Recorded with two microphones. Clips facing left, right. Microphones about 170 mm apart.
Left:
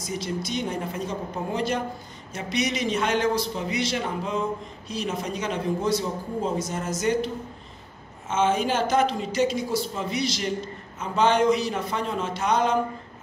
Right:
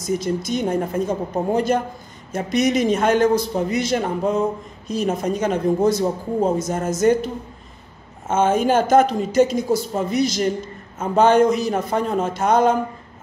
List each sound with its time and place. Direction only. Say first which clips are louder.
0.0 s a man's voice: right 7 dB; 45° right (ahead or behind)
8.3 s a man's voice: right 6 dB; 50° right (ahead or behind)